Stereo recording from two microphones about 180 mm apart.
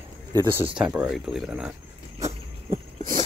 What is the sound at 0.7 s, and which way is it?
Speech, 5° right (ahead or behind).